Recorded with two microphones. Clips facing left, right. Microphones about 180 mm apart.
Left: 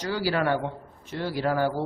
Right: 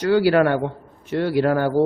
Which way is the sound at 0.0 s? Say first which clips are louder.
Right 10 dB; 60° right (ahead or behind).